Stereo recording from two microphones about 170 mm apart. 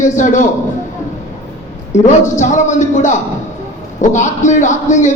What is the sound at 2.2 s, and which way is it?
Speech, 45° left (ahead or behind).